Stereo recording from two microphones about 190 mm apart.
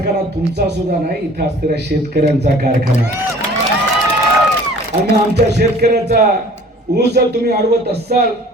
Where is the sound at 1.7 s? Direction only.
60° right (ahead or behind).